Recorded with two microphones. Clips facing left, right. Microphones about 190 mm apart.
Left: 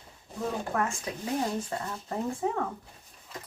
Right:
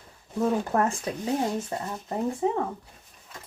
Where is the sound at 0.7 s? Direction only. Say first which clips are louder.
Right 5 dB; 40° right (ahead or behind).